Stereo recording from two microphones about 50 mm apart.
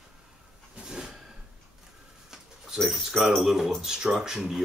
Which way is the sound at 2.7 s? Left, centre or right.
Centre.